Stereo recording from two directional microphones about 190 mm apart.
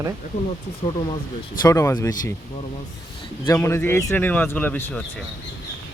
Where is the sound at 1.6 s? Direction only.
15° left (ahead or behind).